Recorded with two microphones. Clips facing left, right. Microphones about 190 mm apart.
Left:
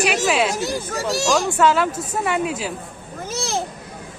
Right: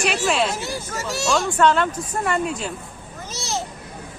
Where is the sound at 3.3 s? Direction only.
55° left (ahead or behind).